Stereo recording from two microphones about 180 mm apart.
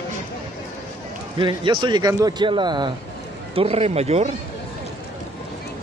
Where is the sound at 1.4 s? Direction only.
25° right (ahead or behind).